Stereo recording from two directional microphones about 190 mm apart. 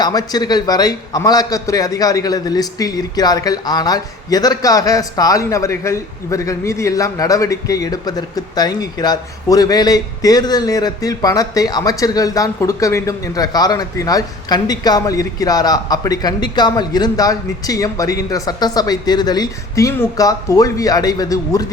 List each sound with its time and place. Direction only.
0.0 s a man's voice: 20° left (ahead or behind)